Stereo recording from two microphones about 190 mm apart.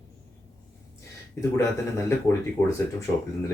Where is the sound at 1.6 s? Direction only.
15° left (ahead or behind).